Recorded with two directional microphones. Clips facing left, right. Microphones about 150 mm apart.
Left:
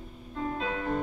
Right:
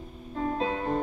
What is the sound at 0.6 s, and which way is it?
Music, 30° right (ahead or behind).